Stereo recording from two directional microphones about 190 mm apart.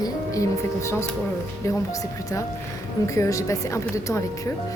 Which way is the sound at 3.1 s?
15° left (ahead or behind).